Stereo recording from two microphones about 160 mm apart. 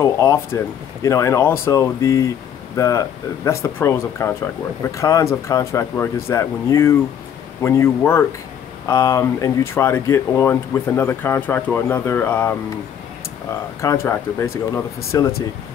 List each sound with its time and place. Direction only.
0.0 s speech: 20° left (ahead or behind)